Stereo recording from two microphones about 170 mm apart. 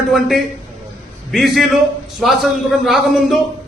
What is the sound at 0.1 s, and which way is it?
A man's voice, centre (ahead or behind).